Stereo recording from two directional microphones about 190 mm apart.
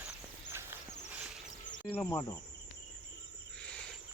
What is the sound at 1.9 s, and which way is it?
Speech, 10° left (ahead or behind).